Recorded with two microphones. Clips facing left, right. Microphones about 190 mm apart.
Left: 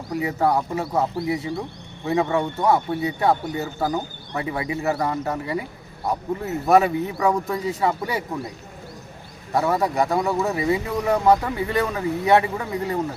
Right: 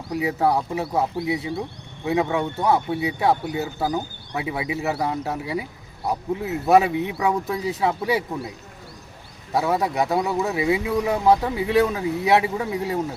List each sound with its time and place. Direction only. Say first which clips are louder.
0.2 s speech: even; 5° right (ahead or behind)
9.5 s speech: left 1 dB; centre (ahead or behind)